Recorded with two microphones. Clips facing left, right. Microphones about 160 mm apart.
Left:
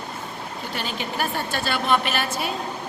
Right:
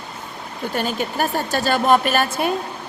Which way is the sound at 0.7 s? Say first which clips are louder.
Right 7 dB; 45° right (ahead or behind).